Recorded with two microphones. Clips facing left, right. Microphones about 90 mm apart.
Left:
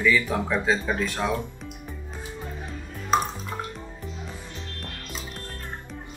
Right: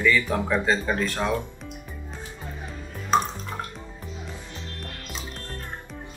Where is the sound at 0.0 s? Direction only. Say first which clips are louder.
Even; 5° left (ahead or behind).